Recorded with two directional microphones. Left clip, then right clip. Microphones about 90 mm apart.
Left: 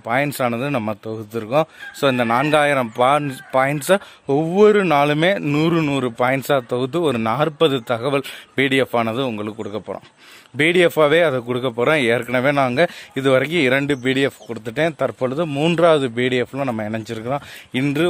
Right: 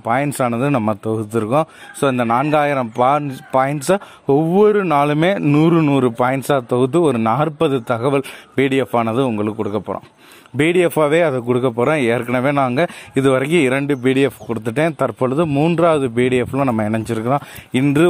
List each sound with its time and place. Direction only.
0.2 s speech: 30° left (ahead or behind)
0.7 s a man's voice: 45° left (ahead or behind)
1.1 s speech: 5° left (ahead or behind)
1.5 s speech: 30° left (ahead or behind)
2.5 s a man's voice: 45° left (ahead or behind)
4.3 s speech: 10° left (ahead or behind)
4.8 s speech: 40° left (ahead or behind)
5.5 s a man's voice: 50° left (ahead or behind)
5.9 s a man's voice: 30° left (ahead or behind)
10.6 s speech: 25° left (ahead or behind); by 12.9 s 40° left (ahead or behind)
13.1 s speech: 25° left (ahead or behind)
15.4 s speech: 45° left (ahead or behind)
16.7 s speech: 20° left (ahead or behind)